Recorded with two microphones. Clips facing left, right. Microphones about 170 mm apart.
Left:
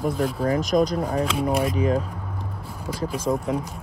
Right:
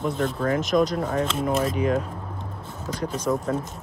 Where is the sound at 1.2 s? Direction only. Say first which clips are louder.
Left 1 dB; centre (ahead or behind).